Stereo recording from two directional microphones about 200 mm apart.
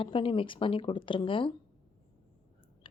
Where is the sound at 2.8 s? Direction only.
25° left (ahead or behind).